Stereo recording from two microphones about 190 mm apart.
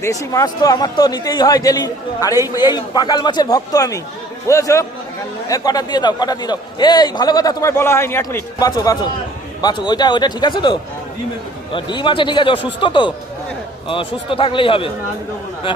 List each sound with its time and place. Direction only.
0.0 s a man's voice: 15° left (ahead or behind)